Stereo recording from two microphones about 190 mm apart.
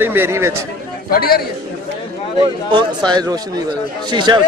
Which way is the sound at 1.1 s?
50° left (ahead or behind).